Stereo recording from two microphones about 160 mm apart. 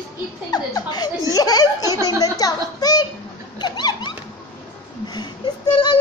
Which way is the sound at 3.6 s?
25° left (ahead or behind).